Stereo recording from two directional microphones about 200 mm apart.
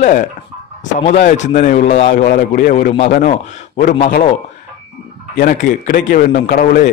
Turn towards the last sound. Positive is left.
turn(degrees=50)  # may be behind; listen again after turning